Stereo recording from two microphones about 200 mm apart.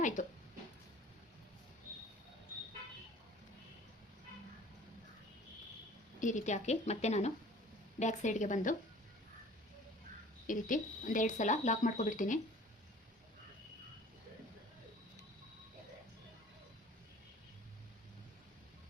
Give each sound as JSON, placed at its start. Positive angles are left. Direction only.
{"t": 0.0, "sound": "speech", "side_deg": 40}
{"t": 6.1, "sound": "speech", "side_deg": 40}
{"t": 10.4, "sound": "speech", "side_deg": 40}